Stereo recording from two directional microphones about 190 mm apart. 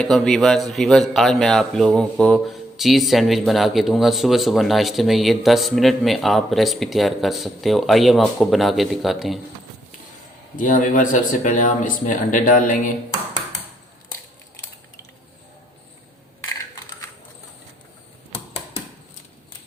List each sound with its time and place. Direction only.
0.0 s speech: centre (ahead or behind)
10.6 s speech: 45° left (ahead or behind)